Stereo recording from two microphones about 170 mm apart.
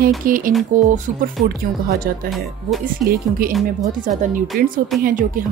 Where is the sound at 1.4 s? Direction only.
65° right (ahead or behind).